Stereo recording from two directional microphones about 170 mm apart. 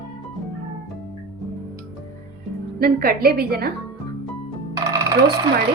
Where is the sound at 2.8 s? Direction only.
60° right (ahead or behind).